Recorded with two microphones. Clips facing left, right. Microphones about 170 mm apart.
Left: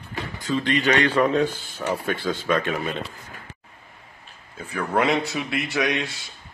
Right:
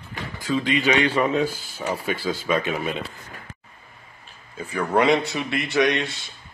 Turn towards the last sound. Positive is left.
turn(degrees=5)  # may be behind; listen again after turning